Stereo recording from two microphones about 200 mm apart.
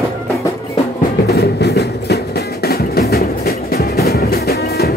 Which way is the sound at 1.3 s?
55° left (ahead or behind).